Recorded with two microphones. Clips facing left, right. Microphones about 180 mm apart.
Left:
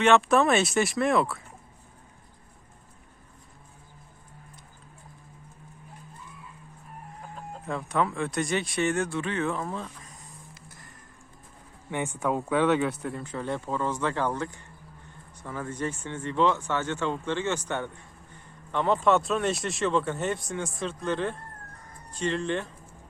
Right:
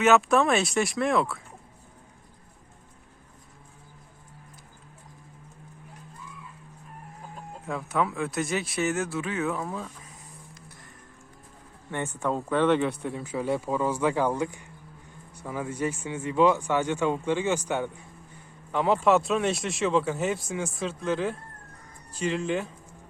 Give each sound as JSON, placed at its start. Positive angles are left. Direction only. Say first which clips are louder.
{"t": 0.0, "sound": "speech", "louder": "even", "side_deg": 0}
{"t": 7.7, "sound": "speech", "louder": "even", "side_deg": -5}
{"t": 11.9, "sound": "speech", "louder": "left 1 dB", "side_deg": 15}